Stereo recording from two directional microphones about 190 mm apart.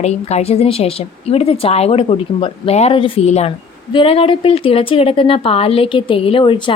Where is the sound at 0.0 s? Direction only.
35° left (ahead or behind).